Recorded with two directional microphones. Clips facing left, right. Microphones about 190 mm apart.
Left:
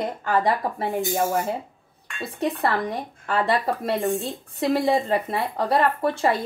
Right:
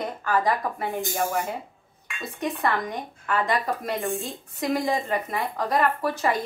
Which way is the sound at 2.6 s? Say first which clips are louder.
Left 2 dB; 30° left (ahead or behind).